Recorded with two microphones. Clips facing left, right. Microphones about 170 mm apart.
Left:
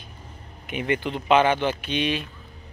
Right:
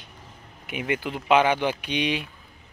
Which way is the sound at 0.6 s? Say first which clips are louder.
Left 2 dB; 10° right (ahead or behind).